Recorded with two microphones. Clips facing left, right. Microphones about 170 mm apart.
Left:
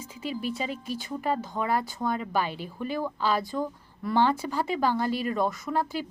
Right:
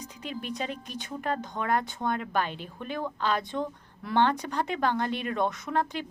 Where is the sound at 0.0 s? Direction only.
5° left (ahead or behind).